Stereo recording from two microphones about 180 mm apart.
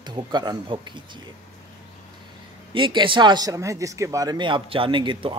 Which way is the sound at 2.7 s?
25° right (ahead or behind).